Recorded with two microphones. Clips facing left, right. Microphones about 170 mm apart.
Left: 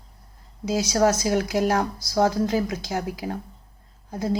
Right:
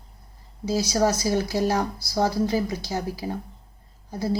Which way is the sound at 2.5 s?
15° left (ahead or behind).